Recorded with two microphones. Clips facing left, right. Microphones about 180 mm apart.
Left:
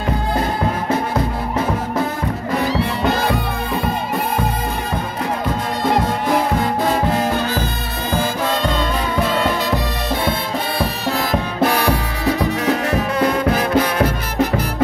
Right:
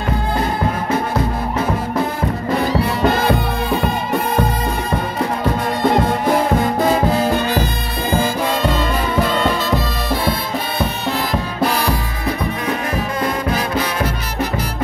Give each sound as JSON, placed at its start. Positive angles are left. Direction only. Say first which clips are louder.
{"t": 8.6, "sound": "music", "louder": "right 1 dB", "side_deg": -5}
{"t": 11.6, "sound": "music", "louder": "left 2 dB", "side_deg": 50}
{"t": 12.3, "sound": "music", "louder": "left 4 dB", "side_deg": 80}